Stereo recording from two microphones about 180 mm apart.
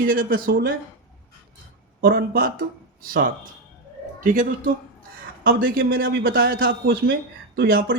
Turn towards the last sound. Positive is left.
turn(degrees=-55)  # may be behind; listen again after turning